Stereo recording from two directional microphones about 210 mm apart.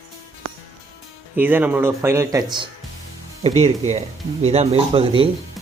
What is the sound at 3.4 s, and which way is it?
Speech, 30° right (ahead or behind).